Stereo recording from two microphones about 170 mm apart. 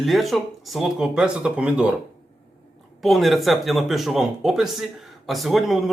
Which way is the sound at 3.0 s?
Centre (ahead or behind).